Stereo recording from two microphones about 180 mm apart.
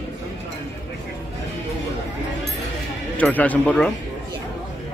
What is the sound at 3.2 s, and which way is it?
Speech, 10° left (ahead or behind).